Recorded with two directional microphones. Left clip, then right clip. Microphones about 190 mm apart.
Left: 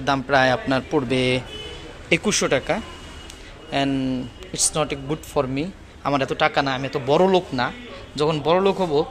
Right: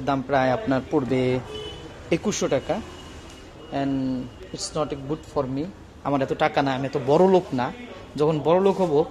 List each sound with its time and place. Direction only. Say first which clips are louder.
0.0 s a man's voice: left 4 dB; centre (ahead or behind)
6.0 s speech: left 2 dB; 5° right (ahead or behind)